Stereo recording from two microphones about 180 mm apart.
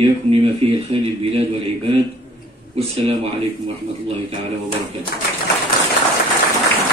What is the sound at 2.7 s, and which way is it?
Speech, 35° right (ahead or behind).